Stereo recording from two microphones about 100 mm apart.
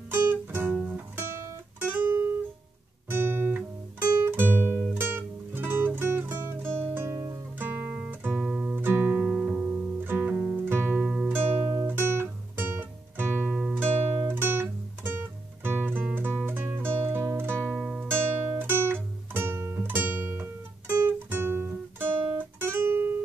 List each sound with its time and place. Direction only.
0.1 s music: 20° right (ahead or behind)
3.1 s guitar: 20° right (ahead or behind)
4.9 s music: 20° right (ahead or behind)
8.3 s music: 5° right (ahead or behind)
8.8 s music: 20° right (ahead or behind)
13.7 s guitar: 20° right (ahead or behind)
17.7 s music: 5° right (ahead or behind)
18.6 s music: 20° right (ahead or behind)